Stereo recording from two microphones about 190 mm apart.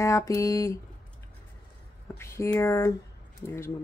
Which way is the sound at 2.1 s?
15° left (ahead or behind).